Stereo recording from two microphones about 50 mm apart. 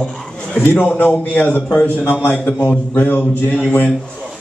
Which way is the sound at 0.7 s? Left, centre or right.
Left.